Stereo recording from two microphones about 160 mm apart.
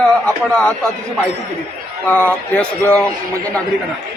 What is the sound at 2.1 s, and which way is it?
A man's voice, 10° left (ahead or behind).